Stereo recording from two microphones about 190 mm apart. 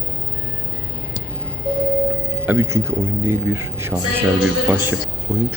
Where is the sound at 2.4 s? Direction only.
15° right (ahead or behind).